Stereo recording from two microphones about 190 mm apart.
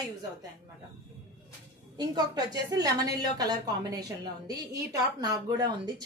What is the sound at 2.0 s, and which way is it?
A woman's voice, 20° right (ahead or behind).